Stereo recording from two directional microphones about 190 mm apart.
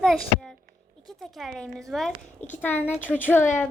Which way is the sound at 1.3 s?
Centre (ahead or behind).